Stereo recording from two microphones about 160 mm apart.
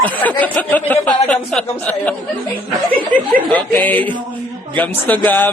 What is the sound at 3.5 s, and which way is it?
A man's voice, 10° left (ahead or behind).